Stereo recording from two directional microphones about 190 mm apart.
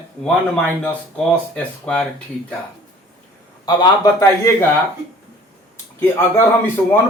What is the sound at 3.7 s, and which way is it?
Speech, 15° left (ahead or behind).